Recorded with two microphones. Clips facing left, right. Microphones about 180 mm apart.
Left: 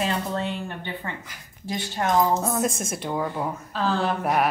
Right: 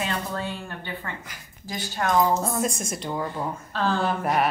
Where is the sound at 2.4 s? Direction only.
Centre (ahead or behind).